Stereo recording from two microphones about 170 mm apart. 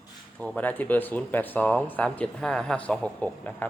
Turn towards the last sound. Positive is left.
turn(degrees=10)  # may be behind; listen again after turning